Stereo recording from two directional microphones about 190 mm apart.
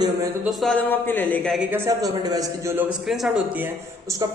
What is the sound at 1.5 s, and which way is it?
Speech, 10° right (ahead or behind).